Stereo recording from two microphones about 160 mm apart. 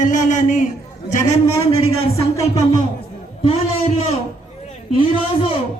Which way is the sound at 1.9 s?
40° left (ahead or behind).